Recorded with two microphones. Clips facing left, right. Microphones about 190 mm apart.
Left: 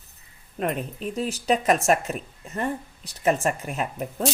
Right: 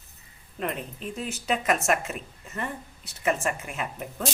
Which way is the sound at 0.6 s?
40° left (ahead or behind).